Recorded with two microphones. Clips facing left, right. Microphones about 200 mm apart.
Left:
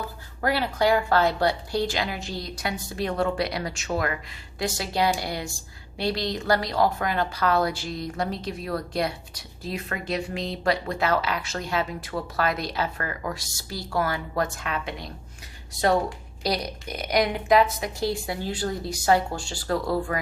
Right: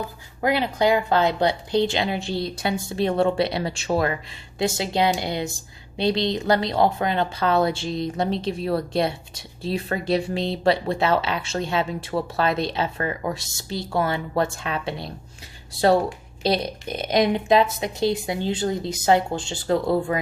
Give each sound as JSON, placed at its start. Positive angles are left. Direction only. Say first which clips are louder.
{"t": 0.0, "sound": "a woman's voice", "louder": "right 3 dB", "side_deg": -20}